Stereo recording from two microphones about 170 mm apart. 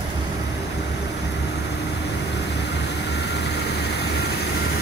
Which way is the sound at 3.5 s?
70° left (ahead or behind).